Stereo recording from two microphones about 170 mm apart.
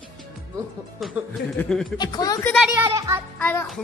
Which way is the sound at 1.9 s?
25° left (ahead or behind).